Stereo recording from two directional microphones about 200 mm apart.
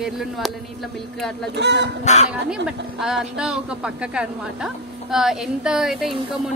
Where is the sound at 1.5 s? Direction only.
60° right (ahead or behind).